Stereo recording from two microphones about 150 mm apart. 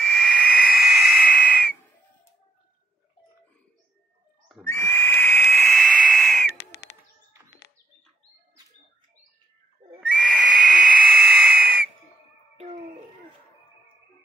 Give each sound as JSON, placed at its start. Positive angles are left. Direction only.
{"t": 0.0, "sound": "whistle", "side_deg": 5}
{"t": 4.6, "sound": "owl", "side_deg": 15}
{"t": 5.5, "sound": "a sound", "side_deg": 0}
{"t": 6.0, "sound": "screaming", "side_deg": 0}
{"t": 10.3, "sound": "whistle", "side_deg": -5}